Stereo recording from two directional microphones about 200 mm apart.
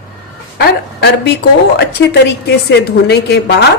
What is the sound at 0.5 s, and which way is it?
Speech, 50° left (ahead or behind).